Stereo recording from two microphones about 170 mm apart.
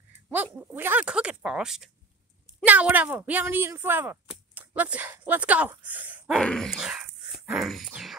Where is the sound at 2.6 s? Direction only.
10° right (ahead or behind).